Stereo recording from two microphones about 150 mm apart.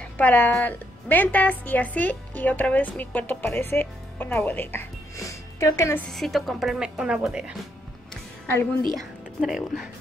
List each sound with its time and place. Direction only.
0.0 s a woman's voice: 10° left (ahead or behind)
6.1 s speech: centre (ahead or behind)
8.9 s speech: 5° right (ahead or behind)